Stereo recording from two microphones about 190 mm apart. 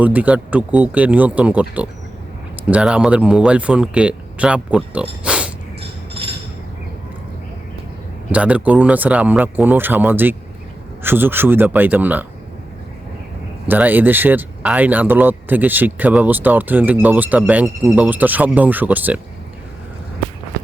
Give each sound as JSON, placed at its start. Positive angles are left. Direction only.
{"t": 0.0, "sound": "speech", "side_deg": -10}
{"t": 5.2, "sound": "a sound", "side_deg": -5}
{"t": 8.3, "sound": "speech", "side_deg": -5}
{"t": 13.7, "sound": "speech", "side_deg": -10}